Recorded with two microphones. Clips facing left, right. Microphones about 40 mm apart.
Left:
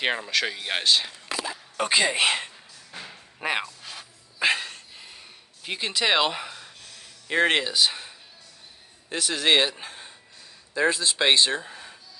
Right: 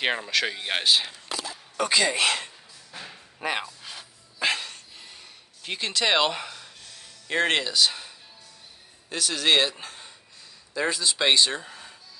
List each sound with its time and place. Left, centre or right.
0.0 s speech: centre
1.3 s a sound: left
1.8 s speech: left
4.4 s dog: centre
5.6 s speech: centre
9.1 s speech: centre
11.6 s a sound: centre